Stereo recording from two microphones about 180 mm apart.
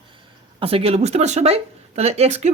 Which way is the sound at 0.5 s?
30° right (ahead or behind).